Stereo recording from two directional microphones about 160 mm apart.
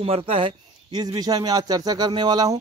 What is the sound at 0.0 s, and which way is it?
Speech, 35° right (ahead or behind).